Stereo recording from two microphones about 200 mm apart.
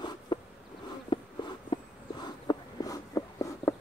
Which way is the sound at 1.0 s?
25° left (ahead or behind).